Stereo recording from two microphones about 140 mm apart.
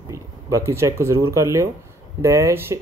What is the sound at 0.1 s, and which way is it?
Speech, 20° right (ahead or behind).